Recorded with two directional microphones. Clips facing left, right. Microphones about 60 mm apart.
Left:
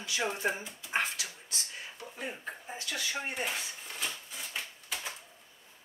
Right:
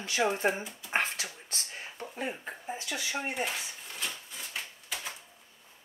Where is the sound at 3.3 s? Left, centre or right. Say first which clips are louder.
Right 2 dB; centre.